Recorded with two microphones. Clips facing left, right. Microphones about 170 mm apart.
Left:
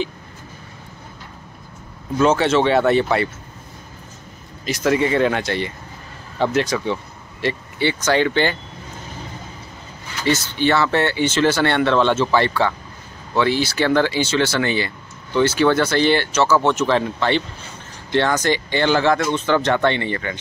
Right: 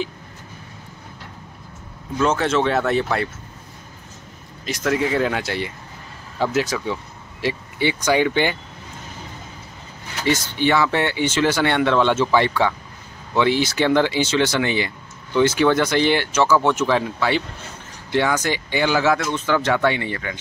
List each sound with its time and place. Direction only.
2.1 s speech: centre (ahead or behind)
4.6 s speech: centre (ahead or behind); by 8.5 s 15° right (ahead or behind)
10.2 s speech: 15° right (ahead or behind)